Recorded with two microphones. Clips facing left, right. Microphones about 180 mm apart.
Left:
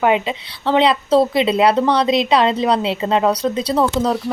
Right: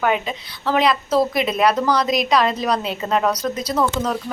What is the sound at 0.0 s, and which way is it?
A woman's voice, 25° left (ahead or behind).